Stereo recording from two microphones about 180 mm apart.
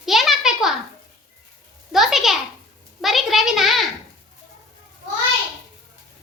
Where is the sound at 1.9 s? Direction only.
Centre (ahead or behind).